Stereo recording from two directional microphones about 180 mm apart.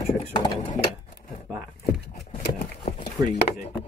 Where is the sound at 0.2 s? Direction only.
25° left (ahead or behind).